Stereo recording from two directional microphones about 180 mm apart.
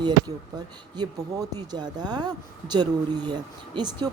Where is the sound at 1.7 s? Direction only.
25° right (ahead or behind).